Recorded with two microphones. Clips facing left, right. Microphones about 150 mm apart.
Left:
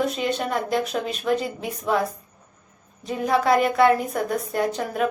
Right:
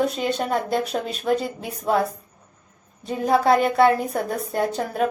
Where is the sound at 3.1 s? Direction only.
30° right (ahead or behind).